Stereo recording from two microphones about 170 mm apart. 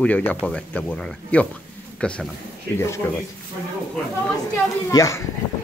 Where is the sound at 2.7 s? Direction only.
15° left (ahead or behind).